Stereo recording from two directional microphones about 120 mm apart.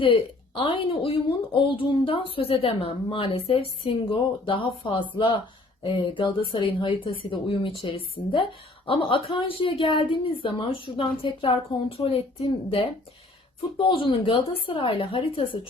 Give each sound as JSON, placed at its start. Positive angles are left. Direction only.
{"t": 0.0, "sound": "a woman's voice", "side_deg": 45}